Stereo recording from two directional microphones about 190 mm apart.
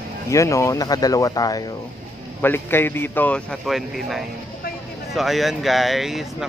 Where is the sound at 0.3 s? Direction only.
15° left (ahead or behind).